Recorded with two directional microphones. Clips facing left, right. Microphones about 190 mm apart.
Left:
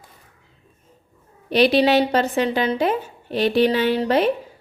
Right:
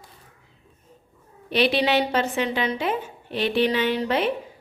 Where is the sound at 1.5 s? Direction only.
40° left (ahead or behind).